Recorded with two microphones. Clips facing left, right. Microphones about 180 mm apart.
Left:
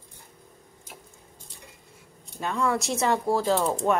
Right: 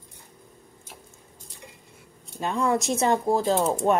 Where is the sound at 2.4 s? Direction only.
20° right (ahead or behind).